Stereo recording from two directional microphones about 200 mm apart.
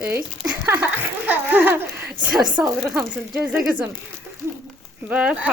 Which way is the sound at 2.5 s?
5° right (ahead or behind).